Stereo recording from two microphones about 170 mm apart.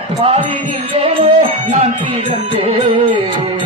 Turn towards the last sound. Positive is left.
turn(degrees=-35)  # may be behind; listen again after turning